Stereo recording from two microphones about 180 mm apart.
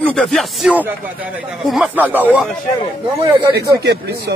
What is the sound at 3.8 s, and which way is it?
Speech, 65° right (ahead or behind).